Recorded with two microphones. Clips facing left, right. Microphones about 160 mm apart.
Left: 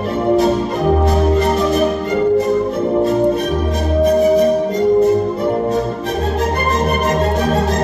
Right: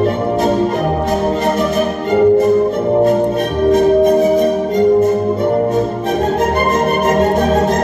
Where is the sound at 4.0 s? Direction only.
25° right (ahead or behind).